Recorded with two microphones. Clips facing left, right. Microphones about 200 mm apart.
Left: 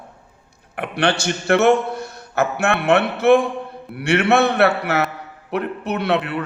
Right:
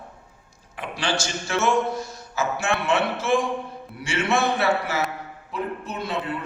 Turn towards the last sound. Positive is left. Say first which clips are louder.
# left 8 dB
turn(degrees=70)  # may be behind; listen again after turning